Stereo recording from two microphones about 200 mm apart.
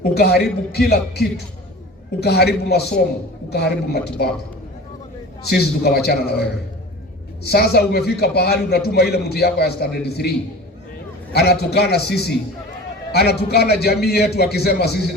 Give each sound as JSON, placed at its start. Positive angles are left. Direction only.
{"t": 0.0, "sound": "a man's voice", "side_deg": 50}
{"t": 2.2, "sound": "a man's voice", "side_deg": 55}
{"t": 5.5, "sound": "a man's voice", "side_deg": 50}